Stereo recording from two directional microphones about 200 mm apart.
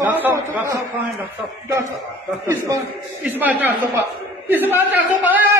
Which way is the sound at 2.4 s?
15° right (ahead or behind).